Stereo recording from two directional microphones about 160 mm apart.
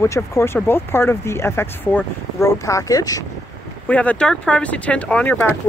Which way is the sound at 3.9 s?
10° left (ahead or behind).